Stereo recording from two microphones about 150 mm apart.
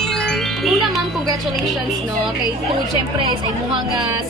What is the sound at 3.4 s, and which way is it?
Speech, 30° right (ahead or behind).